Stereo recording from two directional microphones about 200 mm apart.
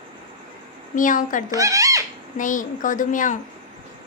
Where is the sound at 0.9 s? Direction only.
40° left (ahead or behind).